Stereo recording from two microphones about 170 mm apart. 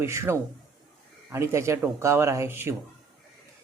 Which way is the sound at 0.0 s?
15° right (ahead or behind).